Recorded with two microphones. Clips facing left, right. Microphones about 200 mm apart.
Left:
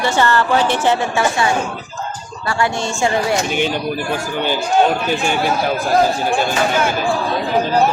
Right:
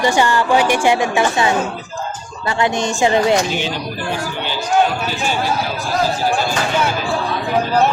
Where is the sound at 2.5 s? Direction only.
20° right (ahead or behind).